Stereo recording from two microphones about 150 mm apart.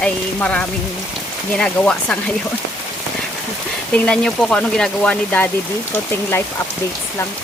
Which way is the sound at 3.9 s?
5° left (ahead or behind).